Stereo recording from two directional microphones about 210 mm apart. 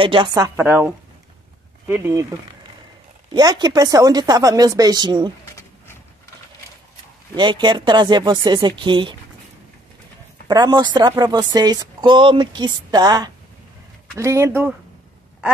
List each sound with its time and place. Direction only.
0.0 s speech: 25° right (ahead or behind)
3.3 s speech: 20° right (ahead or behind)
7.3 s speech: 20° right (ahead or behind)
10.5 s speech: 20° right (ahead or behind)